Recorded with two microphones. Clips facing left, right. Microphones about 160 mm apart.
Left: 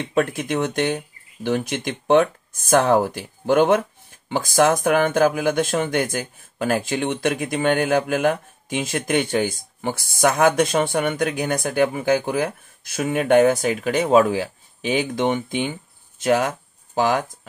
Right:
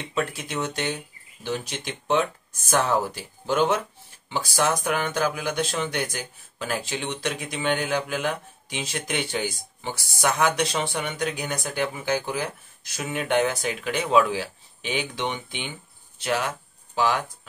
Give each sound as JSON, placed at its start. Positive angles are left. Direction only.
{"t": 0.4, "sound": "speech", "side_deg": 55}